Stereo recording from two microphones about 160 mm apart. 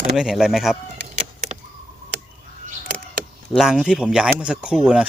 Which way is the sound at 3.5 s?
Centre (ahead or behind).